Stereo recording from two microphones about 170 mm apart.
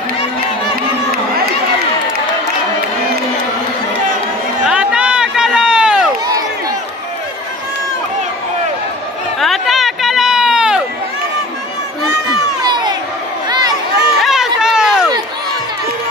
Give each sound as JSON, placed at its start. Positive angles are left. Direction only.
{"t": 4.6, "sound": "run", "side_deg": -5}
{"t": 9.4, "sound": "run", "side_deg": 0}
{"t": 12.6, "sound": "crowd", "side_deg": -25}
{"t": 13.5, "sound": "a sound", "side_deg": -25}
{"t": 14.2, "sound": "run", "side_deg": 0}
{"t": 14.6, "sound": "a sound", "side_deg": -5}